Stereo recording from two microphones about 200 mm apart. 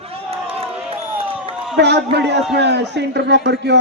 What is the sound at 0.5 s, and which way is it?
Crowd, 30° right (ahead or behind).